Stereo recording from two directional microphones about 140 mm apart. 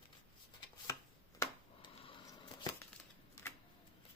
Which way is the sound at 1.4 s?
20° left (ahead or behind).